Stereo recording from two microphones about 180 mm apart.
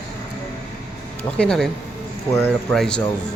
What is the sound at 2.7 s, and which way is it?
Speech, 5° left (ahead or behind).